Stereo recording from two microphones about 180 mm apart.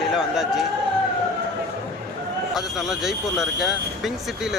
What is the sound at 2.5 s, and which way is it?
Speech, centre (ahead or behind).